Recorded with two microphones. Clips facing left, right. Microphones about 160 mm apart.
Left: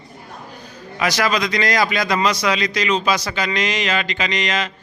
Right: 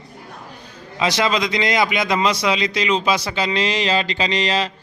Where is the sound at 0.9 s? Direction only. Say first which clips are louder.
Even; 25° right (ahead or behind).